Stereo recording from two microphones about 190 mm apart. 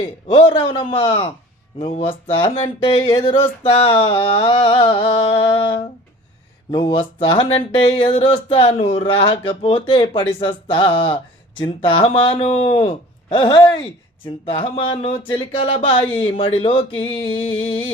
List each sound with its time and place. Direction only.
0.3 s speech: 25° left (ahead or behind)